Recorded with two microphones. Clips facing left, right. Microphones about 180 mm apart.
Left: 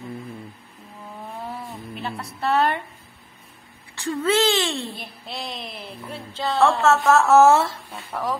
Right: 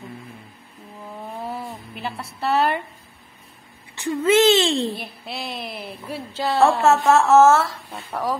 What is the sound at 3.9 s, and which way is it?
Speech, 15° right (ahead or behind).